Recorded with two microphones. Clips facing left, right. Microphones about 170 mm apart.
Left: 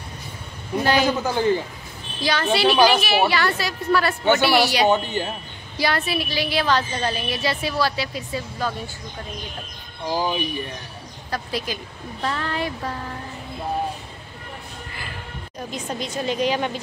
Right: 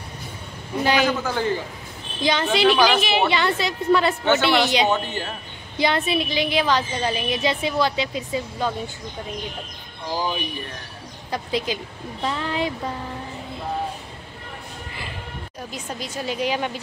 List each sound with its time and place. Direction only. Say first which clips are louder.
1.0 s speech: left 1 dB; 15° left (ahead or behind)
2.2 s a woman's voice: even; 20° right (ahead or behind)
2.7 s speech: left 4 dB; 15° left (ahead or behind)
3.0 s a woman's voice: even; 20° right (ahead or behind)
4.2 s speech: left 1 dB; 15° left (ahead or behind)
4.5 s a woman's voice: even; 20° right (ahead or behind)
4.8 s speech: left 3 dB; 15° left (ahead or behind)
5.8 s a woman's voice: right 2 dB; 20° right (ahead or behind)
10.1 s speech: left 2 dB; 15° left (ahead or behind)
11.2 s speech: right 2 dB; 20° right (ahead or behind)
15.7 s speech: left 4 dB; 5° right (ahead or behind)